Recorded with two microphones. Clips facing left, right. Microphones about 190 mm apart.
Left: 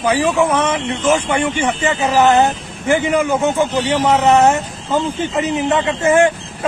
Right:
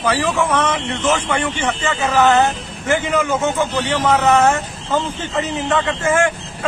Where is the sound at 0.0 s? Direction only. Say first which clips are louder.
Left 3 dB; 10° left (ahead or behind).